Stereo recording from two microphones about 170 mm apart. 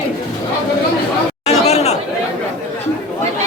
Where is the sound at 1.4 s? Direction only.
40° left (ahead or behind).